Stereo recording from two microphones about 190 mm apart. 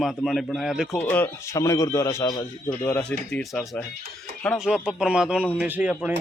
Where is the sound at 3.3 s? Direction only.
5° left (ahead or behind).